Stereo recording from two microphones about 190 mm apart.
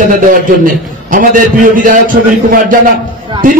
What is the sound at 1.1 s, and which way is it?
A man's voice, 45° right (ahead or behind).